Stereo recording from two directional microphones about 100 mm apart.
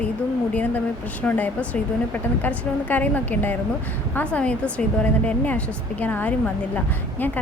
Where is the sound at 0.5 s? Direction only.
15° left (ahead or behind).